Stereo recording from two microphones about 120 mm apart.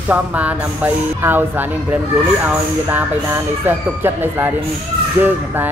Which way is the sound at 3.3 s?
20° right (ahead or behind).